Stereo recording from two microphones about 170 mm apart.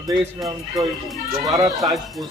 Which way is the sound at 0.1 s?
Centre (ahead or behind).